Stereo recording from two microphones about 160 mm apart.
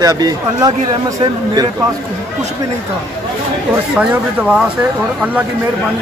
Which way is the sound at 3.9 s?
5° right (ahead or behind).